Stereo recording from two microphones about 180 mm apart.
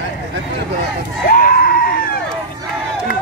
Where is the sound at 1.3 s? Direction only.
55° left (ahead or behind).